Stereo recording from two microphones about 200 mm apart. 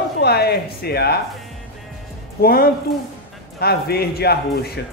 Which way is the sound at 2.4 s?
50° left (ahead or behind).